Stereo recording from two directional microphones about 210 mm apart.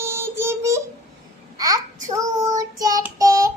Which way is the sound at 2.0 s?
15° right (ahead or behind).